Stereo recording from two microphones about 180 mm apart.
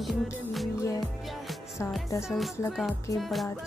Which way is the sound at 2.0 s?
15° left (ahead or behind).